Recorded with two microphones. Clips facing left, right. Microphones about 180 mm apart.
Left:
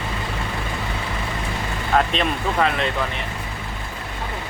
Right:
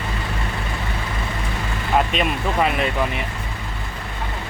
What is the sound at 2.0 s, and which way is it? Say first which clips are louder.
Speech: even; 10° right (ahead or behind).